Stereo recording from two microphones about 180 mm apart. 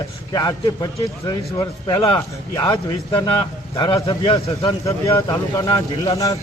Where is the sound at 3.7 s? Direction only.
25° left (ahead or behind).